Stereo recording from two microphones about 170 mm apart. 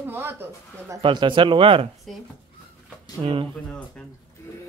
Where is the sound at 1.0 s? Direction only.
30° right (ahead or behind).